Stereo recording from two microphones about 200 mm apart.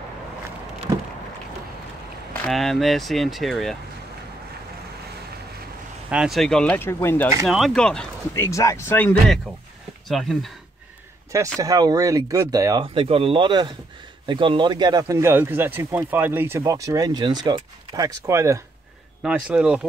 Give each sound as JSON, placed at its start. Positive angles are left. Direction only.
{"t": 0.9, "sound": "a sound", "side_deg": -20}
{"t": 2.4, "sound": "speech", "side_deg": 0}
{"t": 6.0, "sound": "speech", "side_deg": -5}
{"t": 7.4, "sound": "speech", "side_deg": 0}
{"t": 8.5, "sound": "speech", "side_deg": 15}
{"t": 11.3, "sound": "a man's voice", "side_deg": -15}
{"t": 12.9, "sound": "a man's voice", "side_deg": -30}
{"t": 19.2, "sound": "speech", "side_deg": -5}